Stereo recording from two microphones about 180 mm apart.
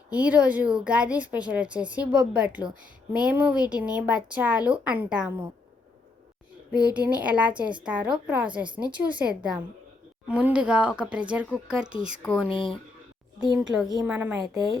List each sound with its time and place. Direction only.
0.1 s a woman's voice: 5° right (ahead or behind)
6.7 s a woman's voice: 5° right (ahead or behind)
12.5 s speech: 30° left (ahead or behind)
13.4 s a woman's voice: 5° right (ahead or behind)